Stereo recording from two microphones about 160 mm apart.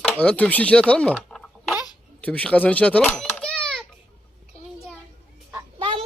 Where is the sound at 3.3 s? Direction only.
5° left (ahead or behind).